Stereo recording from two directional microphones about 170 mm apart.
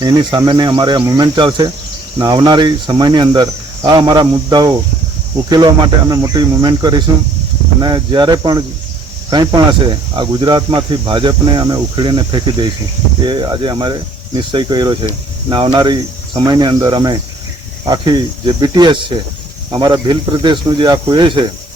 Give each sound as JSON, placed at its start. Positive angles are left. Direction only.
{"t": 0.0, "sound": "speech", "side_deg": -25}